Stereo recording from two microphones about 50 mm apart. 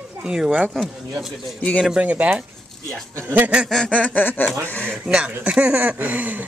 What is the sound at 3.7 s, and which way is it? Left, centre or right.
Speech, centre.